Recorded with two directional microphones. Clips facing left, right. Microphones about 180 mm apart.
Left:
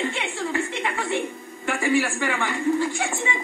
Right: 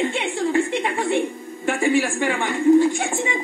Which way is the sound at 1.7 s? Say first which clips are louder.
Right 3 dB; 20° right (ahead or behind).